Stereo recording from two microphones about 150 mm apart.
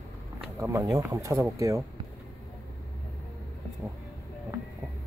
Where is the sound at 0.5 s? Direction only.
20° right (ahead or behind).